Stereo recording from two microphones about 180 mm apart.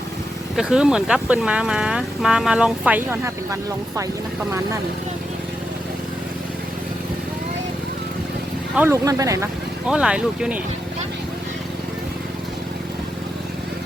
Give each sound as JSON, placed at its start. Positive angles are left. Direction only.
{"t": 0.5, "sound": "speech", "side_deg": -5}
{"t": 8.7, "sound": "speech", "side_deg": -15}
{"t": 9.9, "sound": "speech", "side_deg": -5}